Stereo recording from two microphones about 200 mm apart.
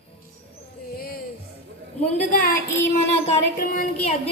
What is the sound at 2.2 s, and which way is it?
A woman's voice, 45° left (ahead or behind).